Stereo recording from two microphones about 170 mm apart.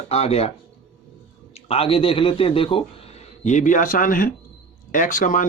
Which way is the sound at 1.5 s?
35° left (ahead or behind).